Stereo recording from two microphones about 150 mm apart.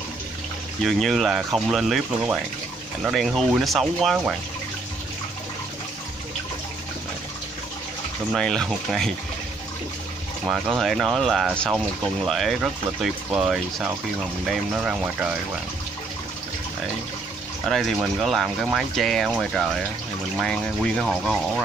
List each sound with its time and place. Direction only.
0.8 s speech: centre (ahead or behind)
8.4 s speech: 5° left (ahead or behind)
10.4 s speech: centre (ahead or behind)
17.6 s speech: centre (ahead or behind)